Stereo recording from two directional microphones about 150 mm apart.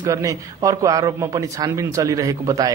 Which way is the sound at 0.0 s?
20° right (ahead or behind).